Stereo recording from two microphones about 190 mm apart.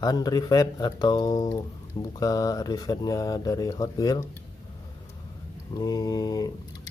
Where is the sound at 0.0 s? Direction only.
20° left (ahead or behind).